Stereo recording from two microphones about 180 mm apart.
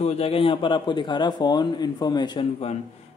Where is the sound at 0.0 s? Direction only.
35° left (ahead or behind).